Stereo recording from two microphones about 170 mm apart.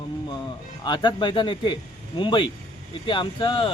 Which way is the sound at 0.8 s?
25° left (ahead or behind).